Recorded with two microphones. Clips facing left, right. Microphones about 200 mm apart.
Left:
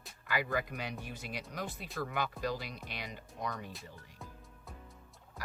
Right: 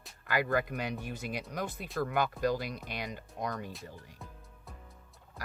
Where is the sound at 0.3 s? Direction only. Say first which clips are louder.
Right 4 dB; 50° right (ahead or behind).